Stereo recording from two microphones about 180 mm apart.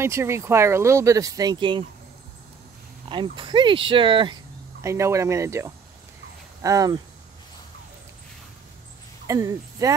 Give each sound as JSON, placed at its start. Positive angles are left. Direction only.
{"t": 0.0, "sound": "speech", "side_deg": -15}
{"t": 3.1, "sound": "speech", "side_deg": -25}
{"t": 4.8, "sound": "speech", "side_deg": -15}
{"t": 9.3, "sound": "speech", "side_deg": -20}